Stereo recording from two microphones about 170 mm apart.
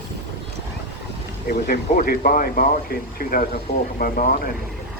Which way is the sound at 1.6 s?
60° left (ahead or behind).